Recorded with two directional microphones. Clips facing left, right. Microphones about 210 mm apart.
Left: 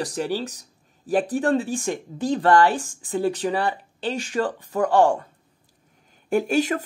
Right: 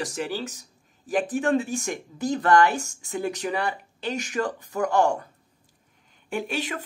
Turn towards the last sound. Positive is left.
turn(degrees=45)  # may be behind; listen again after turning